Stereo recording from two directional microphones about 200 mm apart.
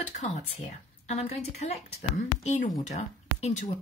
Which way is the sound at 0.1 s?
35° left (ahead or behind).